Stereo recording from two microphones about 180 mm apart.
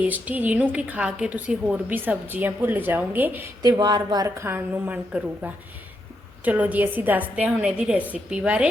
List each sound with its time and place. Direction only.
0.0 s a woman's voice: 10° right (ahead or behind)
3.6 s a woman's voice: 20° right (ahead or behind); by 8.6 s 5° right (ahead or behind)